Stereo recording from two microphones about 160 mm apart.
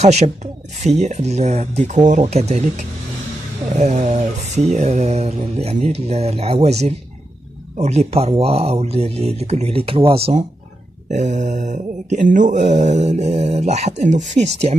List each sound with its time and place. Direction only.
0.0 s speech: 40° right (ahead or behind)
3.7 s speech: 45° right (ahead or behind)